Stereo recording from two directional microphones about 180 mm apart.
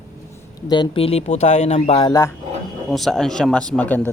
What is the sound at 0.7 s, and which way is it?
Speech, 30° left (ahead or behind).